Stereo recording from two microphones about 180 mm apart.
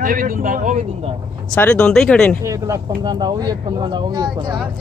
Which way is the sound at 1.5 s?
5° left (ahead or behind).